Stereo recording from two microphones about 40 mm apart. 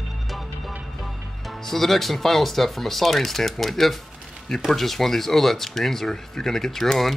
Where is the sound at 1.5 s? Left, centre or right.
Centre.